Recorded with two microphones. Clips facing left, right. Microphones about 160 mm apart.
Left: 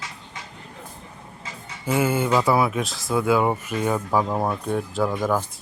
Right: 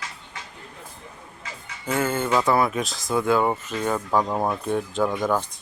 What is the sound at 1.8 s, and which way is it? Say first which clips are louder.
Speech: left 2 dB; 10° left (ahead or behind).